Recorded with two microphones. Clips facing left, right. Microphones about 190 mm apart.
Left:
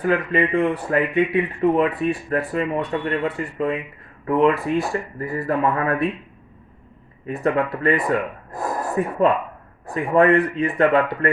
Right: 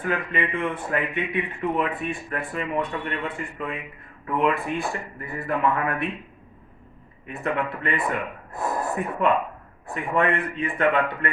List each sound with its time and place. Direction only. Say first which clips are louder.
0.0 s speech: left 7 dB; 35° left (ahead or behind)
7.3 s speech: left 6 dB; 40° left (ahead or behind)